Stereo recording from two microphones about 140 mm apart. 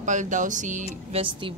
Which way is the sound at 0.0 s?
60° right (ahead or behind).